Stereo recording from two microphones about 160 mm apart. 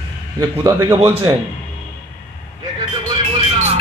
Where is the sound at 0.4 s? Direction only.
25° right (ahead or behind).